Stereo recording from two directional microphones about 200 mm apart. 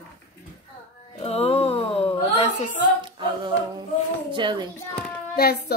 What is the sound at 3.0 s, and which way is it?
Singing, 25° right (ahead or behind).